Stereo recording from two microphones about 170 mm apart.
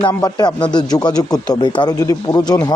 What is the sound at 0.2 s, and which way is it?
Speech, 25° left (ahead or behind).